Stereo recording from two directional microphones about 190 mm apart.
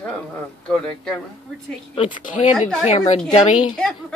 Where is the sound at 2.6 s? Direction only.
Centre (ahead or behind).